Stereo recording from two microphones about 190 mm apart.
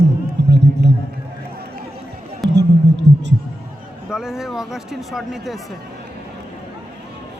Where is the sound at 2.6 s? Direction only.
70° right (ahead or behind).